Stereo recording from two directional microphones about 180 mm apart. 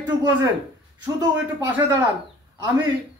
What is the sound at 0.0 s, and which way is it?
Speech, 20° right (ahead or behind).